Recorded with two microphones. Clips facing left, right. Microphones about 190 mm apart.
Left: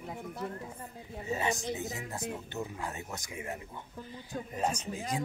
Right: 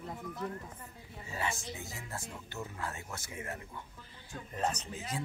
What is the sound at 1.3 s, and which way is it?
Speech, 20° left (ahead or behind).